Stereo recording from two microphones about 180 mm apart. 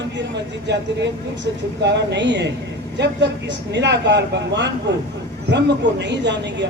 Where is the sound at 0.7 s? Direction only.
75° right (ahead or behind).